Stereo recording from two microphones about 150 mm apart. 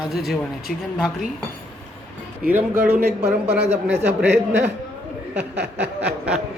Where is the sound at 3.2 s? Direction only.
90° right.